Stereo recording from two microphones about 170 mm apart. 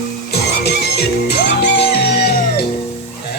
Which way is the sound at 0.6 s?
75° left (ahead or behind).